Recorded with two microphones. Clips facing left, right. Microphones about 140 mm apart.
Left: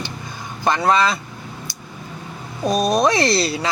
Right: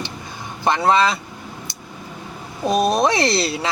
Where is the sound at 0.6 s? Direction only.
25° right (ahead or behind).